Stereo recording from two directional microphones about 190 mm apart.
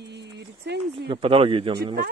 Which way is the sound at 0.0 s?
65° right (ahead or behind).